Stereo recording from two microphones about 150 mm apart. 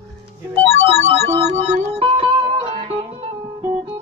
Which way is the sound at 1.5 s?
45° right (ahead or behind).